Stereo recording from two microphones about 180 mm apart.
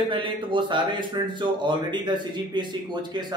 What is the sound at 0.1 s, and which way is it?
Speech, 25° right (ahead or behind).